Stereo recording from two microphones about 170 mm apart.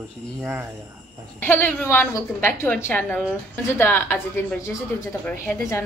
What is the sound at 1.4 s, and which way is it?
A woman's voice, 10° left (ahead or behind).